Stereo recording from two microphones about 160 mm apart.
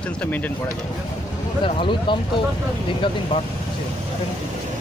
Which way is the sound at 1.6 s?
30° left (ahead or behind).